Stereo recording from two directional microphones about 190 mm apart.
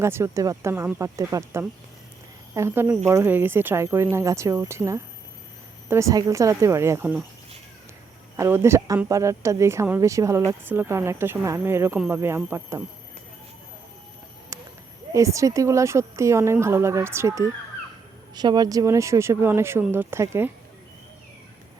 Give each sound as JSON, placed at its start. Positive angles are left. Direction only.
{"t": 0.0, "sound": "a woman's voice", "side_deg": -15}
{"t": 8.4, "sound": "a woman's voice", "side_deg": -15}
{"t": 14.5, "sound": "a sound", "side_deg": -15}
{"t": 15.1, "sound": "a woman's voice", "side_deg": -15}